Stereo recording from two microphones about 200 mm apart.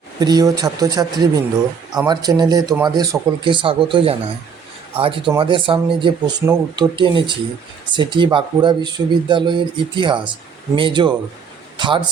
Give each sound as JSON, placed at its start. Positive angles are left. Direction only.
{"t": 0.2, "sound": "speech", "side_deg": -20}
{"t": 6.4, "sound": "speech", "side_deg": -10}
{"t": 6.9, "sound": "speech", "side_deg": -25}